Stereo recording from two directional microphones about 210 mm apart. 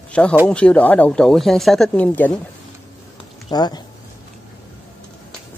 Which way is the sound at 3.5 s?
20° left (ahead or behind).